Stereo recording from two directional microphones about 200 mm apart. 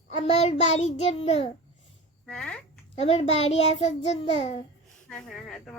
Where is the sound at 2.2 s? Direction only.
5° left (ahead or behind).